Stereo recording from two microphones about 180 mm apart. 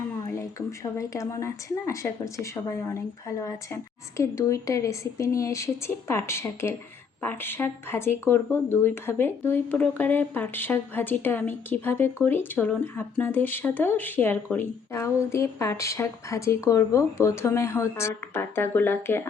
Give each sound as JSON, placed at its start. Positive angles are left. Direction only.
{"t": 0.9, "sound": "speech", "side_deg": 15}